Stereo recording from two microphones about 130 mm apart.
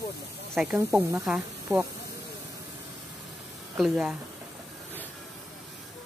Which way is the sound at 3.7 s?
5° right (ahead or behind).